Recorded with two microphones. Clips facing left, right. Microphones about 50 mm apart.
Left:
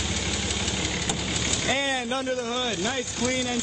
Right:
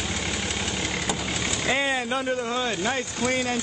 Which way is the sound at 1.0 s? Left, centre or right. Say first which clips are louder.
Right 1 dB; right.